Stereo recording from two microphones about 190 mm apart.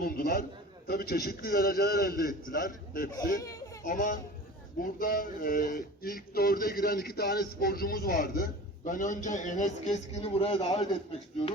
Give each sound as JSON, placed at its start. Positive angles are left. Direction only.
{"t": 0.0, "sound": "a man's voice", "side_deg": 50}